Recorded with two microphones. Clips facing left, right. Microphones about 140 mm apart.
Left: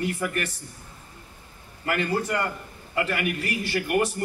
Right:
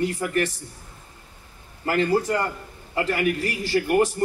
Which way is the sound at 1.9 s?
30° right (ahead or behind).